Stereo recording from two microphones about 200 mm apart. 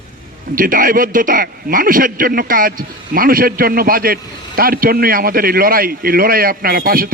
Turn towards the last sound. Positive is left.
turn(degrees=-45)  # may be behind; listen again after turning